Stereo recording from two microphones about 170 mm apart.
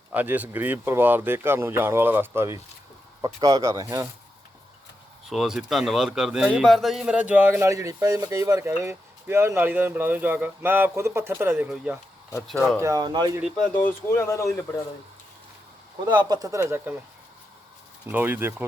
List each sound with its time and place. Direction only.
0.1 s a man's voice: 10° right (ahead or behind)
5.3 s a man's voice: 5° right (ahead or behind)
12.8 s speech: 20° right (ahead or behind)
13.8 s speech: 15° left (ahead or behind)
16.0 s speech: 25° right (ahead or behind)
18.0 s a man's voice: 10° right (ahead or behind)